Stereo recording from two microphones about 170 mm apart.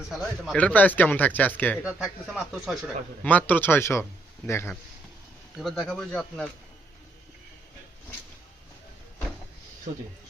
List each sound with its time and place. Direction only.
0.2 s speech: 5° left (ahead or behind)
1.8 s speech: 5° right (ahead or behind); by 4.8 s 15° left (ahead or behind)
5.5 s speech: centre (ahead or behind)
9.9 s speech: 50° right (ahead or behind)